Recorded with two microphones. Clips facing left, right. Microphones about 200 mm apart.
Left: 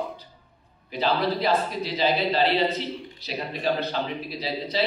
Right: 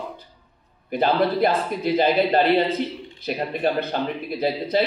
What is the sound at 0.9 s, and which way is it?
A man's voice, 55° right (ahead or behind).